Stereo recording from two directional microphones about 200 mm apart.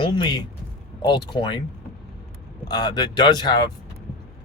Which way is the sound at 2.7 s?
20° left (ahead or behind).